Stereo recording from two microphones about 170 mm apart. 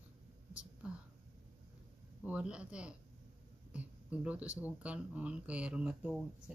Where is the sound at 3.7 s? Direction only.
10° right (ahead or behind).